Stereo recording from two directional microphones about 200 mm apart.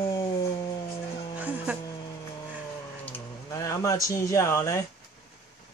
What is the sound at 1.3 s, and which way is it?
Music, 5° right (ahead or behind).